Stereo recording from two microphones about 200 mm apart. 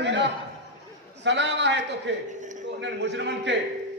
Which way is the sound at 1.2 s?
60° right (ahead or behind).